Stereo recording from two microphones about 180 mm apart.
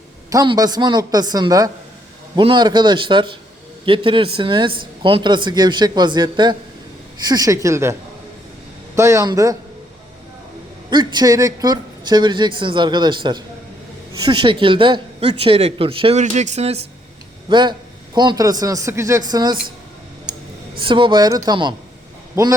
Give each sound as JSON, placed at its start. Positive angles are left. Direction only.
{"t": 0.3, "sound": "a man's voice", "side_deg": -20}
{"t": 9.0, "sound": "a man's voice", "side_deg": -15}
{"t": 10.8, "sound": "a man's voice", "side_deg": -25}
{"t": 17.5, "sound": "a man's voice", "side_deg": -25}
{"t": 20.8, "sound": "a man's voice", "side_deg": -25}